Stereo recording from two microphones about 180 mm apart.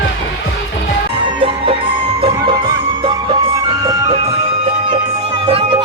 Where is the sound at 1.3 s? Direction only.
30° right (ahead or behind).